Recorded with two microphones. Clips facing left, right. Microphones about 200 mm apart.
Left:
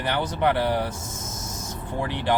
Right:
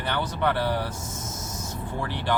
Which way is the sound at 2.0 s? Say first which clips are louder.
Left 5 dB; 15° left (ahead or behind).